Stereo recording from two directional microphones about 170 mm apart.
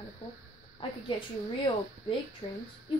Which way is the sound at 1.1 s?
30° left (ahead or behind).